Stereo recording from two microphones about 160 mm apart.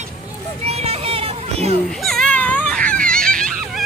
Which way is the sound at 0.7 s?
40° right (ahead or behind).